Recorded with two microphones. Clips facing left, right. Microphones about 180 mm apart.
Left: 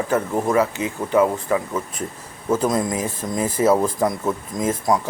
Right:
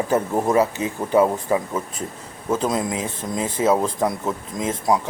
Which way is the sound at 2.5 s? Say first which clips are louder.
Left 2 dB; 5° right (ahead or behind).